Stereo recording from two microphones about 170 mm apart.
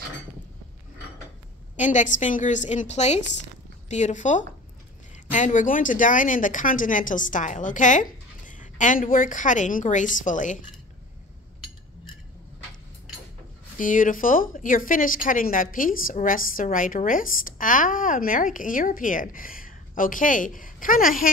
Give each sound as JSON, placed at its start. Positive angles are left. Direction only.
{"t": 1.8, "sound": "speech", "side_deg": 45}
{"t": 13.7, "sound": "speech", "side_deg": 50}